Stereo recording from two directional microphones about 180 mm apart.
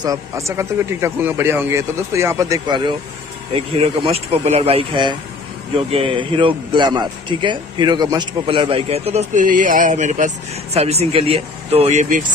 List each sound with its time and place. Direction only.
0.0 s speech: 20° right (ahead or behind)
3.5 s speech: 30° right (ahead or behind)